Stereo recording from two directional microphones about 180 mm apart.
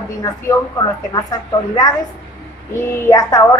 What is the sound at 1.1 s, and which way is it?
Speech, 20° left (ahead or behind).